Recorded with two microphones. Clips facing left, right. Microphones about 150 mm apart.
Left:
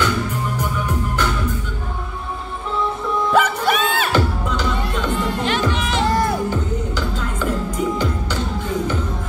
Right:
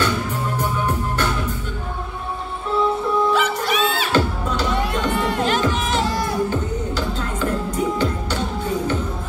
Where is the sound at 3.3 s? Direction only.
50° left (ahead or behind).